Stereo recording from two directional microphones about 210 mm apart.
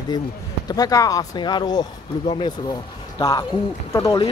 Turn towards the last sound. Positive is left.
turn(degrees=15)  # may be behind; listen again after turning